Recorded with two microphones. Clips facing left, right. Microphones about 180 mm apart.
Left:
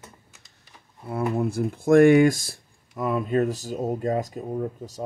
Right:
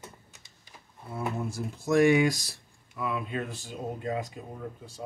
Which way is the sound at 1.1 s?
60° left (ahead or behind).